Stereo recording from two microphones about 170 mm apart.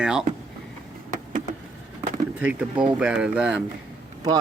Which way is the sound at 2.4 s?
5° right (ahead or behind).